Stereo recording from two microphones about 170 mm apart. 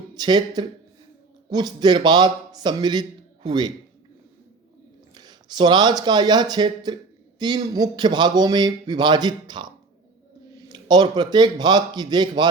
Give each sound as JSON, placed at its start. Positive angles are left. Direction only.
{"t": 0.1, "sound": "a man's voice", "side_deg": -25}
{"t": 5.1, "sound": "a man's voice", "side_deg": -25}